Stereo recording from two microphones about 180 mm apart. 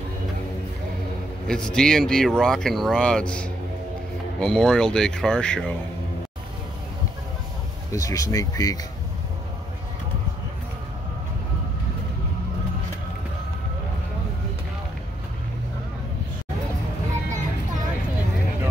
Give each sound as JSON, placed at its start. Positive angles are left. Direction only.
{"t": 1.5, "sound": "speech", "side_deg": 5}
{"t": 7.9, "sound": "speech", "side_deg": 20}